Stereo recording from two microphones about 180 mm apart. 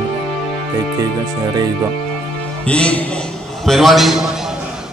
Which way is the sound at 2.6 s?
5° left (ahead or behind).